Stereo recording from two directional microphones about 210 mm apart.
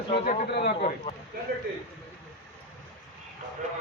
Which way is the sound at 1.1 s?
25° left (ahead or behind).